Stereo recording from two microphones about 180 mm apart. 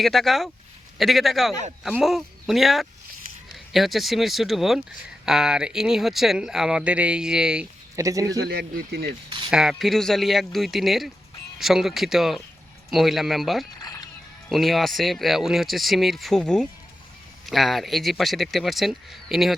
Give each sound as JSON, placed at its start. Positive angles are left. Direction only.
{"t": 0.0, "sound": "speech", "side_deg": 0}
{"t": 7.9, "sound": "speech", "side_deg": -20}
{"t": 8.4, "sound": "speech", "side_deg": -65}
{"t": 9.5, "sound": "speech", "side_deg": -5}
{"t": 13.8, "sound": "music", "side_deg": 20}
{"t": 14.5, "sound": "speech", "side_deg": 0}